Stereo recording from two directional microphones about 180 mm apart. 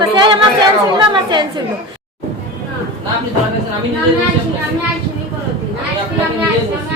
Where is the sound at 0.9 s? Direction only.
25° right (ahead or behind).